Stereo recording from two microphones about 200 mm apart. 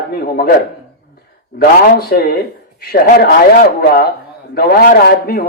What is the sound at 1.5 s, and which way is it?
A man's voice, 50° left (ahead or behind).